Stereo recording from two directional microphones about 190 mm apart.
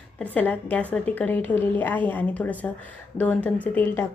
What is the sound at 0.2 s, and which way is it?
A woman's voice, 10° left (ahead or behind).